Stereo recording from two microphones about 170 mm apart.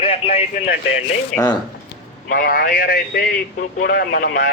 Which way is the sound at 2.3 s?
55° left (ahead or behind).